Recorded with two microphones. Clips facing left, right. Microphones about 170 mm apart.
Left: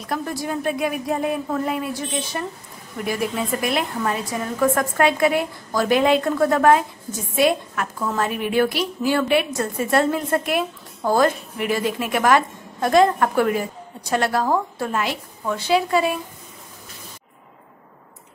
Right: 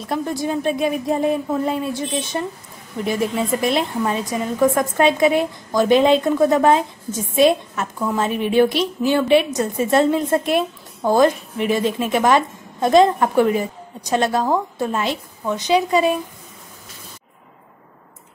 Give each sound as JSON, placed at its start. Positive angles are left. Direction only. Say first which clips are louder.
{"t": 0.0, "sound": "a woman's voice", "louder": "right 4 dB", "side_deg": -25}